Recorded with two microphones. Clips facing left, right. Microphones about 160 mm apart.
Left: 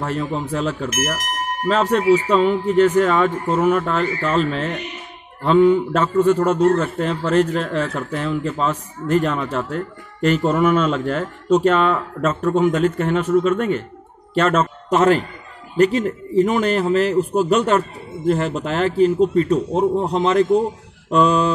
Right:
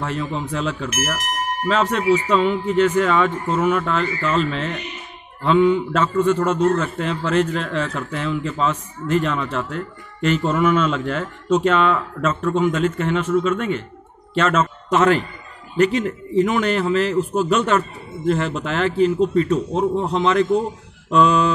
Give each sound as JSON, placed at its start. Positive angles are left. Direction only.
{"t": 0.0, "sound": "a man's voice", "side_deg": 40}